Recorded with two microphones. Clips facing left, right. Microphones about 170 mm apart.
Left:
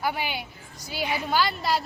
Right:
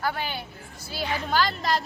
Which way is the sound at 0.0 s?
10° left (ahead or behind).